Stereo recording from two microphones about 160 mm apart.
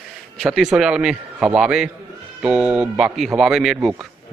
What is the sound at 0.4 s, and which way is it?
A man's voice, centre (ahead or behind).